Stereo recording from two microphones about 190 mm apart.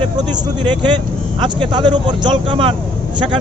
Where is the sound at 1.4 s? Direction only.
25° right (ahead or behind).